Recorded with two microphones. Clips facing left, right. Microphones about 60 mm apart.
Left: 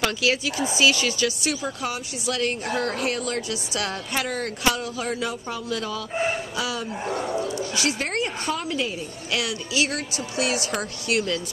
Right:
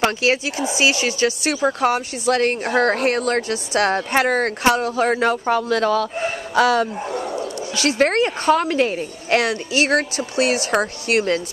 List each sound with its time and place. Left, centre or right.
0.0 s speech: right